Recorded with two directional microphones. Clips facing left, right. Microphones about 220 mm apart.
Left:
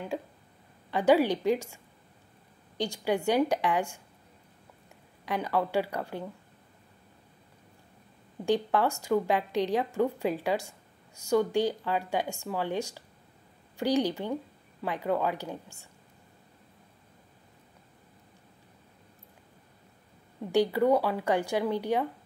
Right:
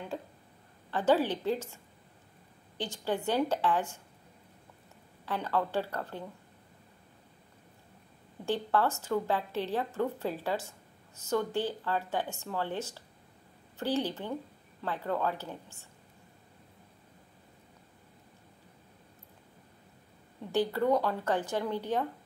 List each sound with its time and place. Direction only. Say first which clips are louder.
0.1 s a woman's voice: left 4 dB; 10° left (ahead or behind)
2.8 s a woman's voice: left 4 dB; 10° left (ahead or behind)
5.2 s a woman's voice: left 3 dB; 15° left (ahead or behind)
8.5 s a woman's voice: left 3 dB; 15° left (ahead or behind)
20.5 s a woman's voice: left 4 dB; 10° left (ahead or behind)